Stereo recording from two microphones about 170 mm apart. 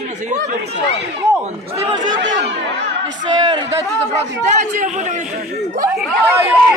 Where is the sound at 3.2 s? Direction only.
25° right (ahead or behind).